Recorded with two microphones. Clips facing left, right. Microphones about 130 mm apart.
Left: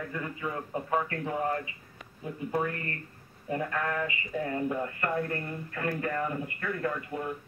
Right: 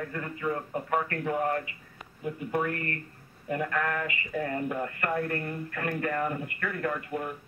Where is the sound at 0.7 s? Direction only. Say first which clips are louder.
Right 1 dB; 20° left (ahead or behind).